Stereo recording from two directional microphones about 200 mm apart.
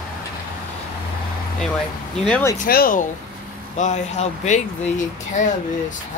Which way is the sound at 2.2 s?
5° left (ahead or behind).